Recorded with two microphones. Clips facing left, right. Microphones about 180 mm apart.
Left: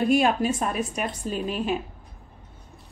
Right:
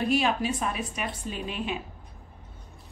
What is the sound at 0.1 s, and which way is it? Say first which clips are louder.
A woman's voice: left 4 dB; 50° left (ahead or behind).